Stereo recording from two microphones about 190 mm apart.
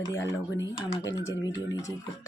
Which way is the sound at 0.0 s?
15° left (ahead or behind).